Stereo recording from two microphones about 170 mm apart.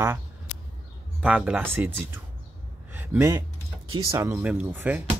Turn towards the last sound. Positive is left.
turn(degrees=-10)  # may be behind; listen again after turning